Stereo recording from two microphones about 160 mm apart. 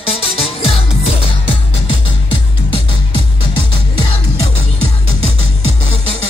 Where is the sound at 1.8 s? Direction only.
30° left (ahead or behind).